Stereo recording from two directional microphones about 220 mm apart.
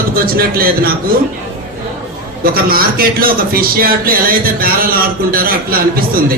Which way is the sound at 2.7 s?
40° right (ahead or behind).